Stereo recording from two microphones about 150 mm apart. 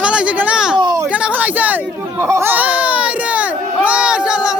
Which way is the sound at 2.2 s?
15° right (ahead or behind).